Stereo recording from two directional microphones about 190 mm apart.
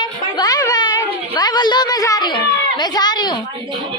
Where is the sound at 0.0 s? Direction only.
20° left (ahead or behind).